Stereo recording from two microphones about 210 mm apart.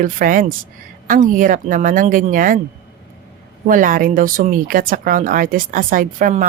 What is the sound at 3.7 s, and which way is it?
Speech, 40° right (ahead or behind).